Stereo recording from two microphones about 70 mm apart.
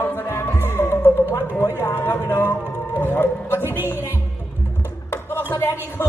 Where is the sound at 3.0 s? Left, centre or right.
Left.